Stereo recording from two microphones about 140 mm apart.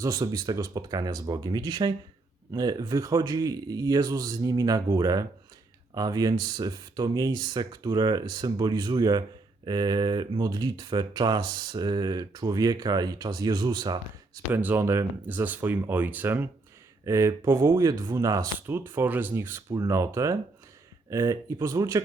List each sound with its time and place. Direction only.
0.0 s speech: 25° right (ahead or behind)
14.5 s speech: 15° right (ahead or behind)